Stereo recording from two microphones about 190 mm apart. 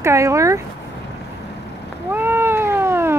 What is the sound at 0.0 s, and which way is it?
Speech, 15° right (ahead or behind).